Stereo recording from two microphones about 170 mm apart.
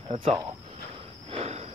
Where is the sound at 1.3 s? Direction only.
35° right (ahead or behind).